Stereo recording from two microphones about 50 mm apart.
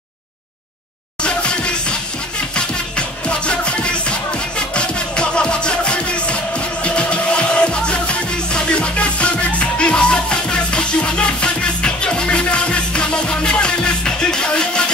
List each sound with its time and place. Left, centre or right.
1.2 s music: left